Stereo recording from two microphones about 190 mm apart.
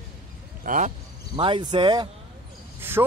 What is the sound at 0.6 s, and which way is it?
Speech, 45° right (ahead or behind).